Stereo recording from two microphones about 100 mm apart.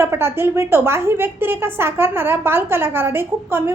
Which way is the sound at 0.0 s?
25° right (ahead or behind).